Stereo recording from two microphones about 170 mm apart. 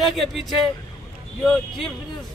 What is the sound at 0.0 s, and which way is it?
Speech, centre (ahead or behind).